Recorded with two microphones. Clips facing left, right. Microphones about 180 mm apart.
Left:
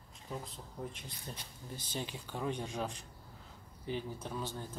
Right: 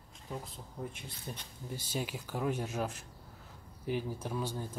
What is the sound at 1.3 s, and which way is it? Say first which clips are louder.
Speech: right 4 dB; 10° right (ahead or behind).